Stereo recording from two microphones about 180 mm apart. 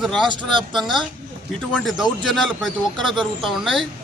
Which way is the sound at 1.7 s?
5° left (ahead or behind).